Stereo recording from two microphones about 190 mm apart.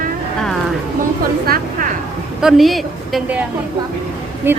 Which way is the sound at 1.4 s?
45° right (ahead or behind).